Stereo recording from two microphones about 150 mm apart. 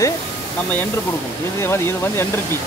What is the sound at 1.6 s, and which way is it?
Speech, 15° left (ahead or behind).